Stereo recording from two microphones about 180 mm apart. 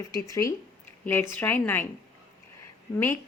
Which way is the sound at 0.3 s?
15° left (ahead or behind).